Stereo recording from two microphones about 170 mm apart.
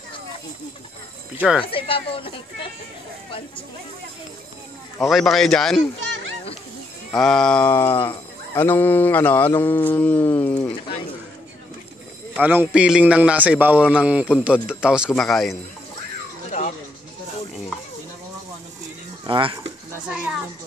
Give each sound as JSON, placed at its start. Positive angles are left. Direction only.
{"t": 1.7, "sound": "speech", "side_deg": 30}
{"t": 5.0, "sound": "a man's voice", "side_deg": 0}
{"t": 7.2, "sound": "speech", "side_deg": 5}
{"t": 12.4, "sound": "a man's voice", "side_deg": -10}
{"t": 19.2, "sound": "speech", "side_deg": -30}
{"t": 20.1, "sound": "a man's voice", "side_deg": -5}